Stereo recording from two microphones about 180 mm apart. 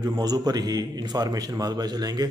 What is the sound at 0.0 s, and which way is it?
A man's voice, 20° right (ahead or behind).